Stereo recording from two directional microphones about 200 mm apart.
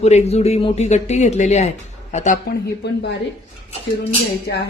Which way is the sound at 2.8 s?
55° left (ahead or behind).